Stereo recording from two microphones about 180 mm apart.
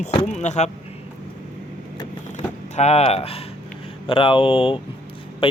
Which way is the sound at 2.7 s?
35° left (ahead or behind).